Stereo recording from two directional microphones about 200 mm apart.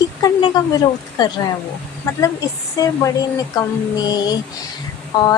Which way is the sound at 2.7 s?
15° left (ahead or behind).